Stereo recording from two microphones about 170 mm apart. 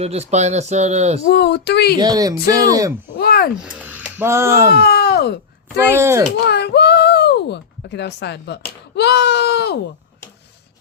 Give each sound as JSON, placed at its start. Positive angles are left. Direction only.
{"t": 0.0, "sound": "speech", "side_deg": -40}
{"t": 1.3, "sound": "speech", "side_deg": 75}
{"t": 2.0, "sound": "speech", "side_deg": -20}
{"t": 3.2, "sound": "a sound", "side_deg": 65}
{"t": 3.6, "sound": "speech", "side_deg": -10}
{"t": 4.7, "sound": "a sound", "side_deg": 70}
{"t": 5.9, "sound": "speech", "side_deg": -15}
{"t": 6.4, "sound": "a sound", "side_deg": 75}
{"t": 9.0, "sound": "speech", "side_deg": 75}